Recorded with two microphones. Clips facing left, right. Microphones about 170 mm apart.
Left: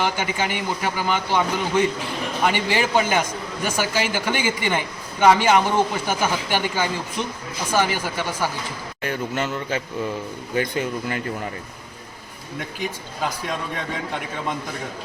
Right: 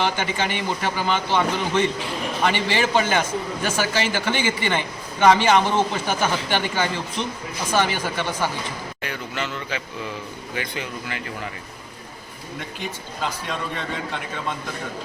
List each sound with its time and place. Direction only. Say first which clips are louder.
0.0 s a man's voice: even; 10° left (ahead or behind)
9.0 s a man's voice: left 7 dB; 45° left (ahead or behind)
12.8 s a man's voice: left 2 dB; 10° left (ahead or behind)